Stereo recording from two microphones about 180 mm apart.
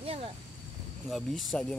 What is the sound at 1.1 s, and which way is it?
Speech, centre (ahead or behind).